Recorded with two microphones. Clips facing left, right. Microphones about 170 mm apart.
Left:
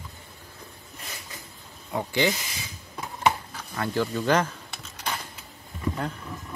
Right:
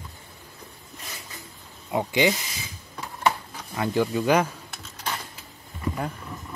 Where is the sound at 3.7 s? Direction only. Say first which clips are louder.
Right 3 dB; 15° right (ahead or behind).